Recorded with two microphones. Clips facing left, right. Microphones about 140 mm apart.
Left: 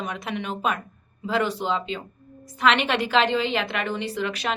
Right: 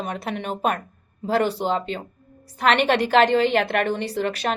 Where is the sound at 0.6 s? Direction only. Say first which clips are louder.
Right 3 dB; 60° right (ahead or behind).